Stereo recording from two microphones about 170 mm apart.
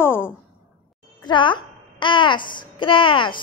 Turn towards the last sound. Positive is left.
turn(degrees=30)  # may be behind; listen again after turning